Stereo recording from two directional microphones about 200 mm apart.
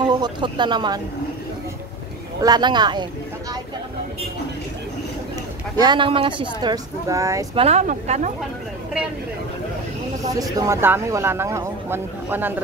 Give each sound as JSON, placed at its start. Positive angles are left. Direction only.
{"t": 0.0, "sound": "speech", "side_deg": -20}
{"t": 2.4, "sound": "speech", "side_deg": -20}
{"t": 5.8, "sound": "speech", "side_deg": -25}
{"t": 7.5, "sound": "speech", "side_deg": -30}
{"t": 10.4, "sound": "speech", "side_deg": -20}